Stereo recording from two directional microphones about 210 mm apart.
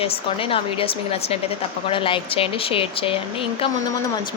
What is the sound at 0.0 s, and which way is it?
A woman's voice, 25° left (ahead or behind).